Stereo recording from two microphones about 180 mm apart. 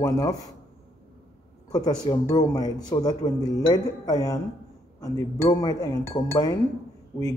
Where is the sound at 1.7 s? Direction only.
20° left (ahead or behind).